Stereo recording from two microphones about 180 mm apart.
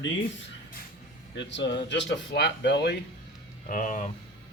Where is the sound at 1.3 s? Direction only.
80° left.